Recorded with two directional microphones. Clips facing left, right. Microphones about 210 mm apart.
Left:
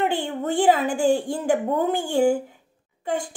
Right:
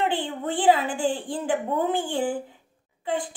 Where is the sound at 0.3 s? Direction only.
45° left (ahead or behind).